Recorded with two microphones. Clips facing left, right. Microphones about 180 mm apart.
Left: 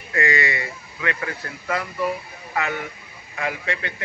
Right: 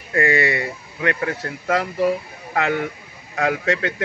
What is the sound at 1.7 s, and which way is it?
Speech, 80° right.